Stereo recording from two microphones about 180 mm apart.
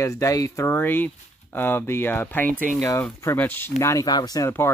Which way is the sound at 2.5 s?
50° right (ahead or behind).